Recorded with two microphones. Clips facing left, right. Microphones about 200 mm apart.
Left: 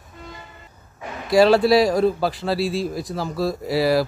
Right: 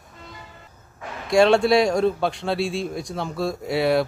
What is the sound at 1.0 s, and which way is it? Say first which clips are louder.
Speech: left 2 dB; 5° left (ahead or behind).